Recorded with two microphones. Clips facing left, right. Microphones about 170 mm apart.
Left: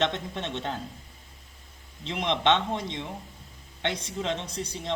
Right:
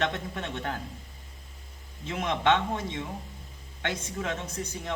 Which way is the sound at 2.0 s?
20° left (ahead or behind).